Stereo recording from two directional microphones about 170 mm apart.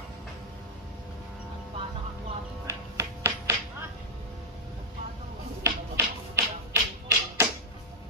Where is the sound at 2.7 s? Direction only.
15° right (ahead or behind).